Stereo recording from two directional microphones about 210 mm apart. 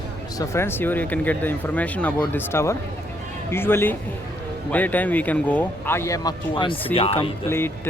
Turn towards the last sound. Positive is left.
turn(degrees=10)  # may be behind; listen again after turning